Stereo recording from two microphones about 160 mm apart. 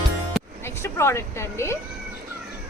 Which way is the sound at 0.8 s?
15° left (ahead or behind).